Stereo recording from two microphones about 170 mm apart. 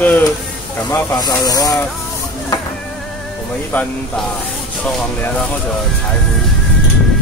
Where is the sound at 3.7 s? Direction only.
5° left (ahead or behind).